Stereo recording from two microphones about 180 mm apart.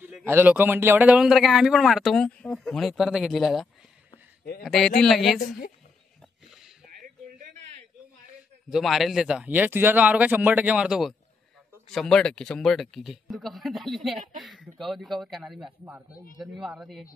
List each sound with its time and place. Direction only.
0.0 s a man's voice: 10° right (ahead or behind)
4.6 s a man's voice: centre (ahead or behind)
7.0 s a sound: 50° right (ahead or behind)
8.6 s a man's voice: centre (ahead or behind)